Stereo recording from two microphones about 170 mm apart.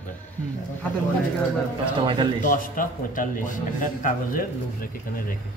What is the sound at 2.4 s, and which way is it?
A man's voice, 50° left (ahead or behind).